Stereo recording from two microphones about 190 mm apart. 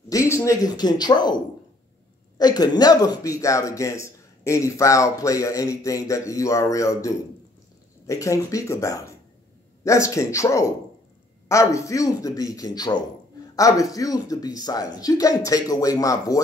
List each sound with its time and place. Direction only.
0.1 s speech: 15° left (ahead or behind)